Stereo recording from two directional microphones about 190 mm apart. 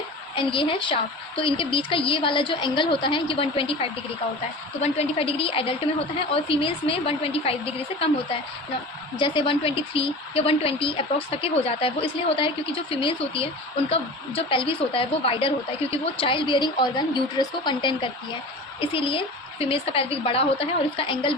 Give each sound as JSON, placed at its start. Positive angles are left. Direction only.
{"t": 0.3, "sound": "a woman's voice", "side_deg": 25}